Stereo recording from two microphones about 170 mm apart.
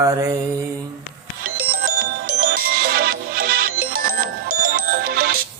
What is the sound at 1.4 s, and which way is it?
Music, 60° right (ahead or behind).